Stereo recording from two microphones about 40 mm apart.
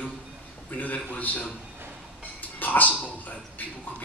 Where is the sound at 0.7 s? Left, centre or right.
Left.